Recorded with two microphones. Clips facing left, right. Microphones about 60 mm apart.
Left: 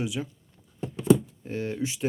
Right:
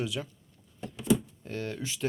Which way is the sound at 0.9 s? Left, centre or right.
Left.